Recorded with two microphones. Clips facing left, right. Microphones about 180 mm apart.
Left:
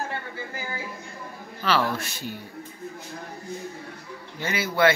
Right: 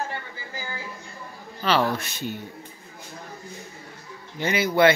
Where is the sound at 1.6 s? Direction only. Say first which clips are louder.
Right 2 dB; 20° right (ahead or behind).